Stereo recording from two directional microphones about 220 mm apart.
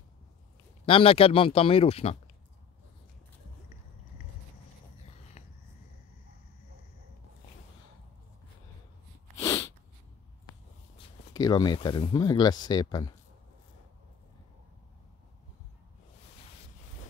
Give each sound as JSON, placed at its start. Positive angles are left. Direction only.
{"t": 0.8, "sound": "speech", "side_deg": 25}
{"t": 9.4, "sound": "sneeze", "side_deg": 15}
{"t": 11.0, "sound": "speech", "side_deg": 15}